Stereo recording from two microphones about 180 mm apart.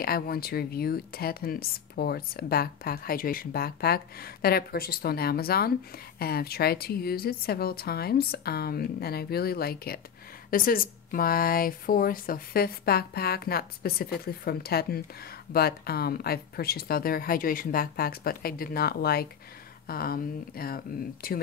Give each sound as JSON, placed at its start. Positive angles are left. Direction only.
{"t": 0.0, "sound": "a woman's voice", "side_deg": 55}